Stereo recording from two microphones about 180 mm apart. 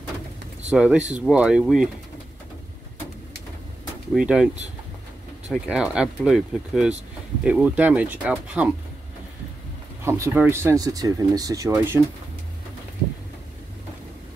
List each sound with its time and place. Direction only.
0.7 s speech: 5° right (ahead or behind)
4.1 s speech: 5° right (ahead or behind)
5.5 s speech: 5° right (ahead or behind)
10.0 s speech: 15° right (ahead or behind)